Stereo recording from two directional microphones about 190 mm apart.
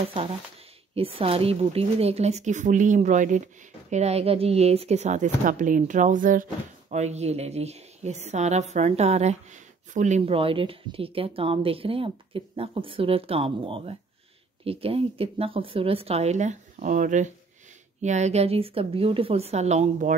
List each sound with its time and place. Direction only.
0.9 s a woman's voice: 30° right (ahead or behind)